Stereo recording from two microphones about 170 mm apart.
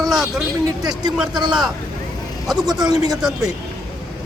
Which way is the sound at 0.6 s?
25° right (ahead or behind).